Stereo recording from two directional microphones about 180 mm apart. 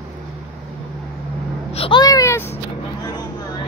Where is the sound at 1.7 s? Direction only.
30° left (ahead or behind); by 2.5 s 15° left (ahead or behind).